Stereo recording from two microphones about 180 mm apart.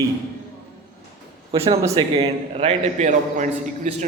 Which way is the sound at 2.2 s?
35° right (ahead or behind).